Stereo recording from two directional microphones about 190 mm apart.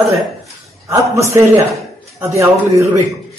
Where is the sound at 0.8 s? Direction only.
15° right (ahead or behind).